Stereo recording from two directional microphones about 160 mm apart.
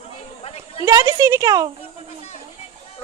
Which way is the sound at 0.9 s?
20° right (ahead or behind).